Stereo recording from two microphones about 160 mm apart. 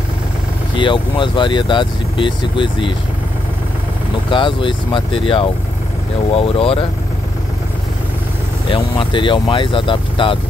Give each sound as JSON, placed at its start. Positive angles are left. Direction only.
{"t": 0.7, "sound": "speech", "side_deg": 30}
{"t": 4.3, "sound": "speech", "side_deg": 30}
{"t": 8.6, "sound": "speech", "side_deg": 30}